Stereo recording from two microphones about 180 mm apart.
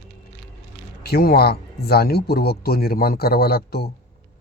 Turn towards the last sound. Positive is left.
turn(degrees=60)  # may be behind; listen again after turning